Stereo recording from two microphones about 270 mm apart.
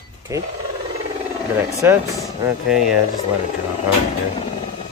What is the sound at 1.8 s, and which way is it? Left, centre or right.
Speech, centre.